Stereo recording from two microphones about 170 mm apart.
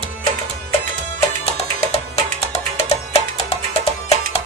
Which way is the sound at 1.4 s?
40° left (ahead or behind).